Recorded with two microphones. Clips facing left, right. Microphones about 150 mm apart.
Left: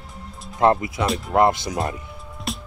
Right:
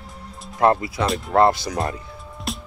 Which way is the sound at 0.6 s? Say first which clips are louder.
Even; 20° left (ahead or behind).